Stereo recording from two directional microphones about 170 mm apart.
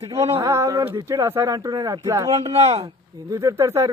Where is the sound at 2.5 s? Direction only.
35° right (ahead or behind).